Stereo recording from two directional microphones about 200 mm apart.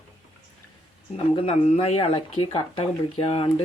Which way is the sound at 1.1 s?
30° left (ahead or behind).